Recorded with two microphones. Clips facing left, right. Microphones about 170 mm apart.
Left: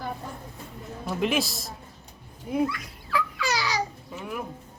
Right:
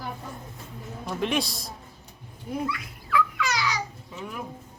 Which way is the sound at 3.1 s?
30° left (ahead or behind).